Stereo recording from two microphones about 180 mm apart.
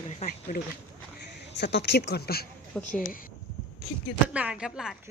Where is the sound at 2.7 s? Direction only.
5° left (ahead or behind).